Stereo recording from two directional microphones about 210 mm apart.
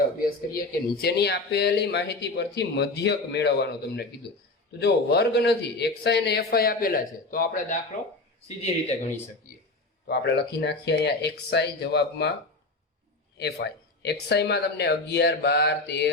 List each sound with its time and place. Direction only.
0.3 s a man's voice: 45° left (ahead or behind)
10.1 s speech: 55° left (ahead or behind)
13.4 s speech: 55° left (ahead or behind)